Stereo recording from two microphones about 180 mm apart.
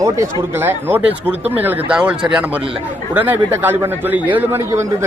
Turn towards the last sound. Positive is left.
turn(degrees=-15)  # may be behind; listen again after turning